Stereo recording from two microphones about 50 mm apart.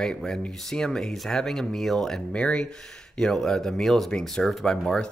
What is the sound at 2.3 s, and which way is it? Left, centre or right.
Speech, left.